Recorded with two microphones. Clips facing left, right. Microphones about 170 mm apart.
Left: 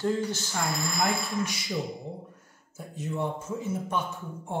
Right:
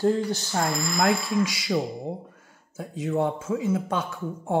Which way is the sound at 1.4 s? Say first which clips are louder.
Right 6 dB; 90° right.